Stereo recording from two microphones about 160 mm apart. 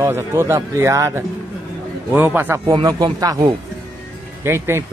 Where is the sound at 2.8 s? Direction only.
25° right (ahead or behind).